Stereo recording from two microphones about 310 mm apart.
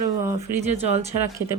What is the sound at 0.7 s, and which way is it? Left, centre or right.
Speech, centre.